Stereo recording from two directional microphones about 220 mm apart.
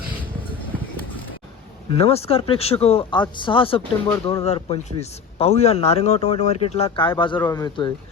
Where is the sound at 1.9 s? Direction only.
25° left (ahead or behind).